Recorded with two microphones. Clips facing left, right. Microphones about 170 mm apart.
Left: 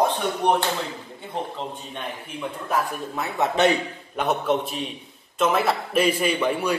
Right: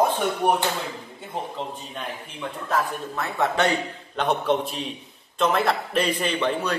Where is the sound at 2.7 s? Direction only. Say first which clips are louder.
Even; 15° left (ahead or behind).